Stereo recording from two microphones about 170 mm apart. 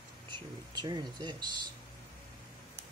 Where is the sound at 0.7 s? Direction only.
25° right (ahead or behind).